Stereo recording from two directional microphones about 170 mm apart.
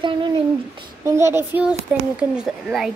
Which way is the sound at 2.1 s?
5° right (ahead or behind).